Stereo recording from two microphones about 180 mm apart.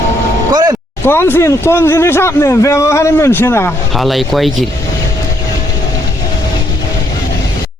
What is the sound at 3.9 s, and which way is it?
Speech, centre (ahead or behind).